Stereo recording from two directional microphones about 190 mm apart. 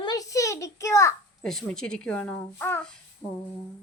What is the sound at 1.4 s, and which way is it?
Speech, centre (ahead or behind).